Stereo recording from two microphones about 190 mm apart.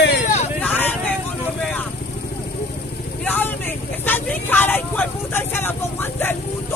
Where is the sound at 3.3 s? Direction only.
10° left (ahead or behind).